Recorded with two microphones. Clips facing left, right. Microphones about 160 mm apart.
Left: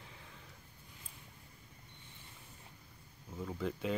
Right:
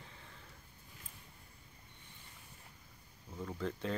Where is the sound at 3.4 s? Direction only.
5° left (ahead or behind).